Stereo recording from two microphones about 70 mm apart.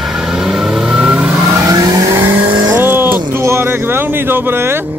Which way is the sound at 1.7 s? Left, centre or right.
Right.